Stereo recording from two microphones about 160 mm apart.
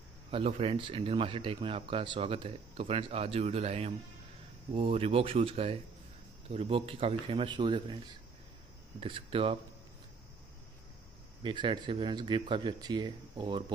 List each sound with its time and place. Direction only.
0.3 s speech: 40° right (ahead or behind)
9.0 s speech: 35° right (ahead or behind)
11.4 s speech: 30° right (ahead or behind)